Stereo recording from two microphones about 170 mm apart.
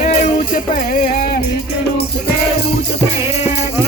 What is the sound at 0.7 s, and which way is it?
Music, 55° left (ahead or behind).